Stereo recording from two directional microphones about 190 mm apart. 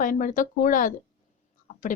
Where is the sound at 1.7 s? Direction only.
40° left (ahead or behind).